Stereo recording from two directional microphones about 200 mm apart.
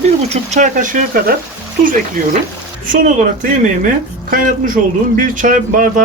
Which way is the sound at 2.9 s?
40° right (ahead or behind).